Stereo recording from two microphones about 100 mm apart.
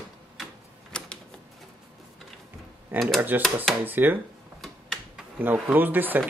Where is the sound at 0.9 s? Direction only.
10° left (ahead or behind).